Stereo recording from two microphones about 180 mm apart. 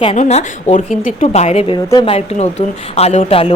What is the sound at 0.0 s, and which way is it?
Speech, 35° left (ahead or behind).